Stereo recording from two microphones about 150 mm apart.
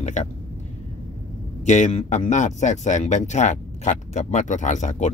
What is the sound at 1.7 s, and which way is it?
Speech, 50° left (ahead or behind).